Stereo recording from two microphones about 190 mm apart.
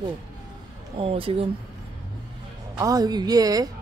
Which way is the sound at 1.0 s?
30° right (ahead or behind).